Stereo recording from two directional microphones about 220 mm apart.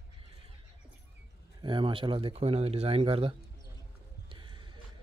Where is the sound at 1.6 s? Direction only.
20° right (ahead or behind).